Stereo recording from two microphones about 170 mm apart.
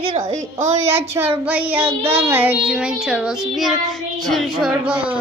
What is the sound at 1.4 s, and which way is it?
Child singing, 10° right (ahead or behind).